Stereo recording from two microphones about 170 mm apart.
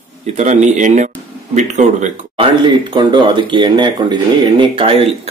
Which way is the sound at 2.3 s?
25° right (ahead or behind).